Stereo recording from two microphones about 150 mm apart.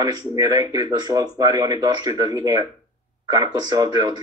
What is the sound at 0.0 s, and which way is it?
Speech, 25° right (ahead or behind).